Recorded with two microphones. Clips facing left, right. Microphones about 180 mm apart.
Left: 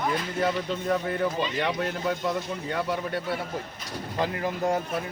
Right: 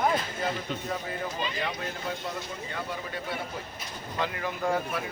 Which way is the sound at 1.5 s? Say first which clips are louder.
Left 6 dB; 65° left (ahead or behind).